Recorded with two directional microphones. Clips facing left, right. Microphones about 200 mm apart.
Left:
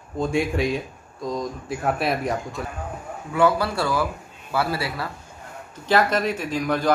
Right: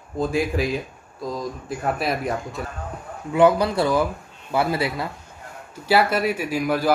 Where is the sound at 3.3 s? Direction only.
20° right (ahead or behind).